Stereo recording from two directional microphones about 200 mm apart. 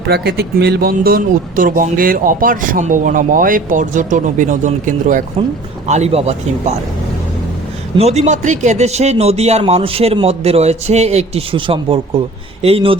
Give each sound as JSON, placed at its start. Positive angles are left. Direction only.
{"t": 0.1, "sound": "a man's voice", "side_deg": -55}
{"t": 7.9, "sound": "a man's voice", "side_deg": -30}